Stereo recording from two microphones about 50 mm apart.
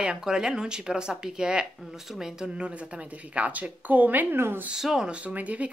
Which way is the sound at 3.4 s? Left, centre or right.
Right.